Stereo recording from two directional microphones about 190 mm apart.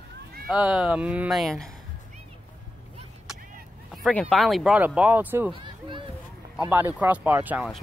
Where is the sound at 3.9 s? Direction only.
Centre (ahead or behind).